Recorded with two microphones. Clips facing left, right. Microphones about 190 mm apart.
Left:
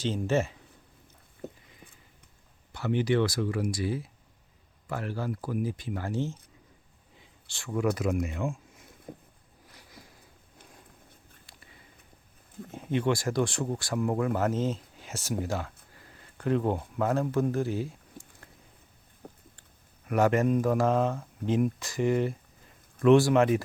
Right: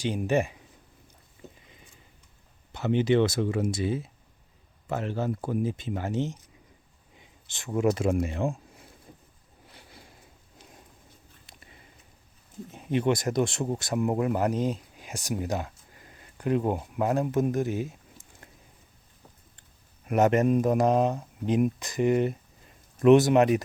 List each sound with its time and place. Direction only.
0.0 s speech: 15° right (ahead or behind)
1.5 s a sound: 20° right (ahead or behind)
2.7 s speech: 20° right (ahead or behind)
9.1 s a sound: 55° left (ahead or behind)
9.7 s sniff: 30° right (ahead or behind)
11.5 s a sound: 20° right (ahead or behind)
12.6 s speech: 20° right (ahead or behind)
19.2 s vehicle: 60° left (ahead or behind)
20.1 s speech: 20° right (ahead or behind)